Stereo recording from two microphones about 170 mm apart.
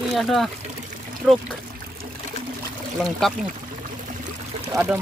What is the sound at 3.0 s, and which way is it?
Speech, centre (ahead or behind).